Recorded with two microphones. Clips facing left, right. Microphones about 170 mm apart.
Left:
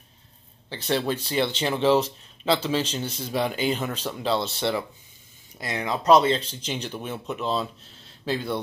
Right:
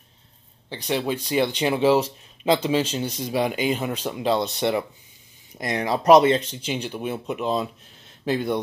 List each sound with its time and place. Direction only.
0.7 s speech: 15° right (ahead or behind)